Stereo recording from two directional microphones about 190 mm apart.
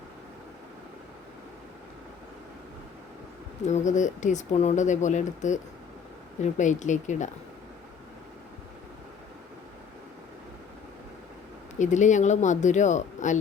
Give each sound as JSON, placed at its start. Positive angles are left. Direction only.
{"t": 3.7, "sound": "speech", "side_deg": 40}
{"t": 11.8, "sound": "speech", "side_deg": 40}